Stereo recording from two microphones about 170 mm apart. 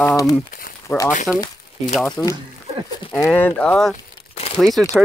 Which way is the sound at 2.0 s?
5° left (ahead or behind).